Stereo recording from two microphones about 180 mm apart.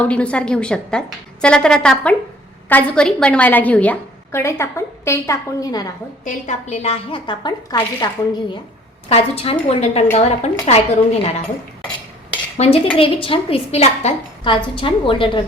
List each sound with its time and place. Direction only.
0.0 s a woman's voice: 5° left (ahead or behind)
6.2 s a woman's voice: 40° left (ahead or behind)
12.5 s a woman's voice: 35° left (ahead or behind)